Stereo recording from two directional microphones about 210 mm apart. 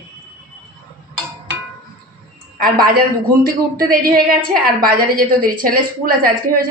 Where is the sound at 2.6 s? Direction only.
45° right (ahead or behind).